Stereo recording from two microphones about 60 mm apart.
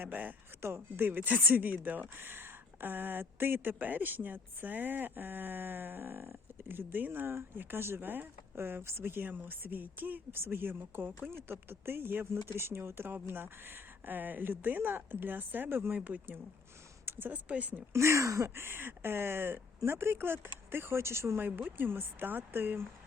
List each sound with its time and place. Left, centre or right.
0.0 s speech: right
0.6 s speech: right
16.0 s speech: right
17.1 s a sound: right
17.3 s speech: right
17.9 s speech: right
21.4 s speech: right